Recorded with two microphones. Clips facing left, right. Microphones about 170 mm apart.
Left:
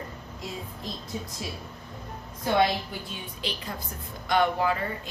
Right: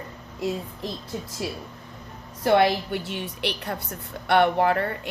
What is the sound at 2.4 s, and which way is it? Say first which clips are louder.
A woman's voice: right 5 dB; 75° right (ahead or behind).